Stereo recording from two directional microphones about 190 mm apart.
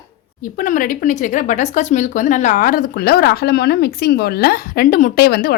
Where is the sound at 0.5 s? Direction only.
45° left (ahead or behind).